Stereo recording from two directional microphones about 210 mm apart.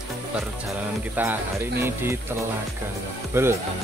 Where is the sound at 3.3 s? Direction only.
10° right (ahead or behind).